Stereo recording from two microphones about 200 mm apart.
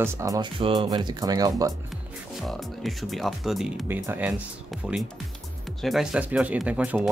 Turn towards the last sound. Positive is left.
turn(degrees=-5)  # may be behind; listen again after turning